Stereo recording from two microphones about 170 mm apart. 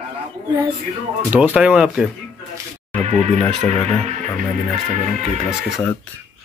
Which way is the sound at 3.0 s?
45° right (ahead or behind).